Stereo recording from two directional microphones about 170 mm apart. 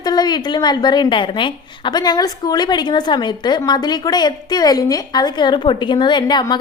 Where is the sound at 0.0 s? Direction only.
25° left (ahead or behind).